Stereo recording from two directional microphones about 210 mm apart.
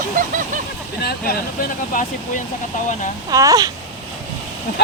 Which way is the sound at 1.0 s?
50° left (ahead or behind).